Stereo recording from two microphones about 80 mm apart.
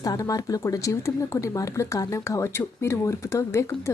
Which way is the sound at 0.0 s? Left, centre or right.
Left.